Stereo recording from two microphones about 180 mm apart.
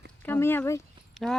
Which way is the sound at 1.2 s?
Centre (ahead or behind).